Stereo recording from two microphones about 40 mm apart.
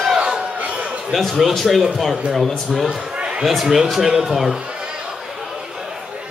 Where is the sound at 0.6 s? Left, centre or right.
Right.